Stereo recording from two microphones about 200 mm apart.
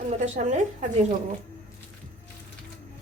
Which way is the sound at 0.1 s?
35° right (ahead or behind).